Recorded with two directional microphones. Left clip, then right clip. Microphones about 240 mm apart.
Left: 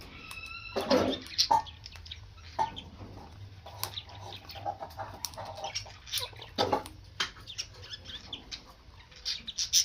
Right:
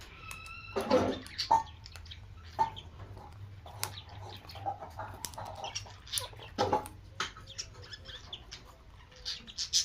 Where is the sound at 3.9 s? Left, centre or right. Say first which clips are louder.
Left 5 dB; left.